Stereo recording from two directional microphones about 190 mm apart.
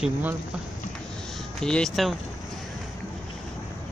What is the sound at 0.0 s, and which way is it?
Speech, 10° right (ahead or behind).